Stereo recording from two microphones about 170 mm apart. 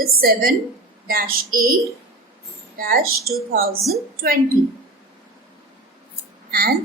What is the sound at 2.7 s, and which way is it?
Speech, 60° right (ahead or behind).